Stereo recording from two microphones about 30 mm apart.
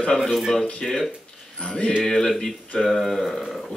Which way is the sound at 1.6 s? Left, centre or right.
Left.